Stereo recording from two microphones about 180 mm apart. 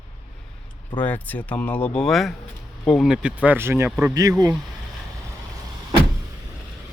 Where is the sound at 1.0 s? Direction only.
10° left (ahead or behind); by 4.5 s 20° right (ahead or behind).